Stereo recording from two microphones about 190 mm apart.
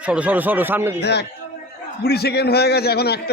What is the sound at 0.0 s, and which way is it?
Speech, 5° right (ahead or behind).